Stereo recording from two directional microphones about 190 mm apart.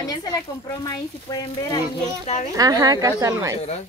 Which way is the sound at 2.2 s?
35° left (ahead or behind).